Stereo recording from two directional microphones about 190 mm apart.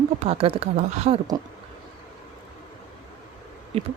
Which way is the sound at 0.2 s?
30° right (ahead or behind).